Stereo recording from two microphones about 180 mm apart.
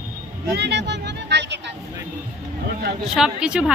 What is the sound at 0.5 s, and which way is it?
Speech, 70° right (ahead or behind).